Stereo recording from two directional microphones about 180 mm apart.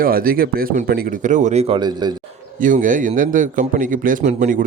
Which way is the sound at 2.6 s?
45° right (ahead or behind).